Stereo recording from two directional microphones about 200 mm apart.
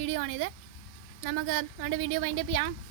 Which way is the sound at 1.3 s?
85° right.